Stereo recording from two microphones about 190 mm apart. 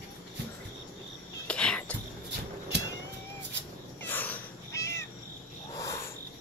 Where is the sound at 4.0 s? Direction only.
10° left (ahead or behind).